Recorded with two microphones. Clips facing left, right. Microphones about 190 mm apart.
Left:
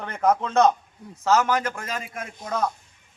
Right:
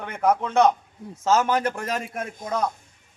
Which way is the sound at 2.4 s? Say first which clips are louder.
Even; 20° right (ahead or behind).